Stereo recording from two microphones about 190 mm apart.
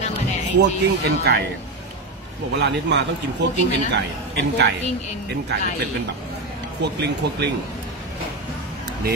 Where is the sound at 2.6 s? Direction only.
65° right (ahead or behind).